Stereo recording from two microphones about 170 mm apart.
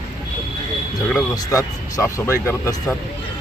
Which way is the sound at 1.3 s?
20° left (ahead or behind).